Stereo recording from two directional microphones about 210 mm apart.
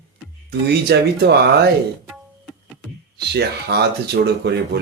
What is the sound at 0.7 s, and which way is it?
Speech, 50° right (ahead or behind).